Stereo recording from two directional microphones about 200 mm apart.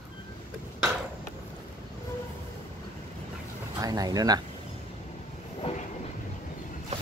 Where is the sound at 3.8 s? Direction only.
20° right (ahead or behind).